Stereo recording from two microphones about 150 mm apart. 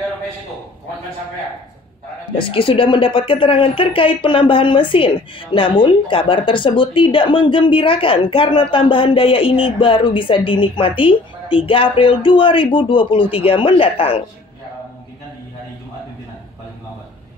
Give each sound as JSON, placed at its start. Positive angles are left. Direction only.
{"t": 2.3, "sound": "speech", "side_deg": 35}